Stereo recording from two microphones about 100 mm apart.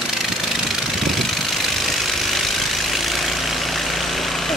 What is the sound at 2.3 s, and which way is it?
Vehicle, centre (ahead or behind).